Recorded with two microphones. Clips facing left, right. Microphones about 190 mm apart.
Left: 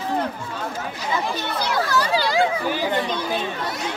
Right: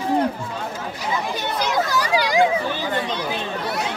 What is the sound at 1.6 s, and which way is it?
Speech, 15° right (ahead or behind).